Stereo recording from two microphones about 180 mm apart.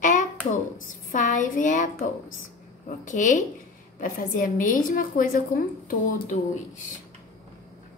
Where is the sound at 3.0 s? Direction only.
45° left (ahead or behind).